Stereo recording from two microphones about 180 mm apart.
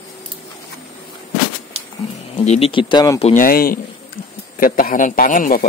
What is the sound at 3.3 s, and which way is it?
A man's voice, 55° left (ahead or behind).